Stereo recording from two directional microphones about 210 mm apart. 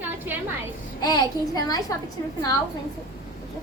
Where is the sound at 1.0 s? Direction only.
20° left (ahead or behind).